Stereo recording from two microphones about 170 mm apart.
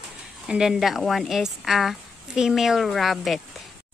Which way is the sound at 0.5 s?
5° right (ahead or behind).